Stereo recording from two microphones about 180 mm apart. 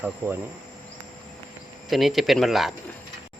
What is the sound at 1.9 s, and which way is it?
Speech, centre (ahead or behind).